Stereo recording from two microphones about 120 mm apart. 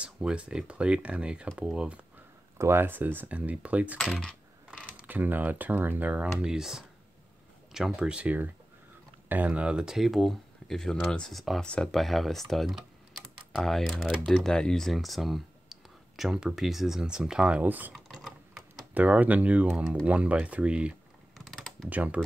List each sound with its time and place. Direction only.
0.0 s speech: 10° right (ahead or behind)
2.5 s speech: 20° right (ahead or behind)
4.0 s speech: 5° left (ahead or behind)
4.6 s speech: 10° right (ahead or behind)
17.9 s typing: centre (ahead or behind)
18.9 s speech: 10° right (ahead or behind)
21.5 s typing: 5° left (ahead or behind)
21.8 s speech: 10° right (ahead or behind)